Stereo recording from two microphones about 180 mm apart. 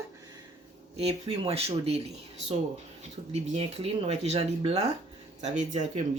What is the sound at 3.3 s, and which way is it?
Speech, 35° right (ahead or behind).